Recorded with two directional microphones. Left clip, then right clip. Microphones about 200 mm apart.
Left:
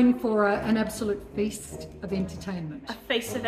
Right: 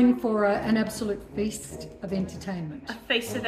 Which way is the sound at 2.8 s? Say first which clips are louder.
Right 1 dB; 20° left (ahead or behind).